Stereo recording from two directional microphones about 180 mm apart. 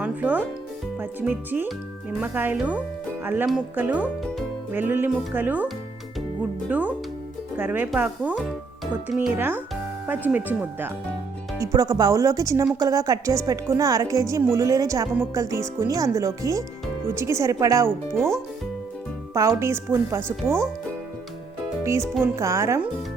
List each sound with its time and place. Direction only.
0.0 s speech: 10° right (ahead or behind)
11.6 s speech: 20° right (ahead or behind)
19.3 s speech: 15° right (ahead or behind)
21.8 s speech: 15° right (ahead or behind)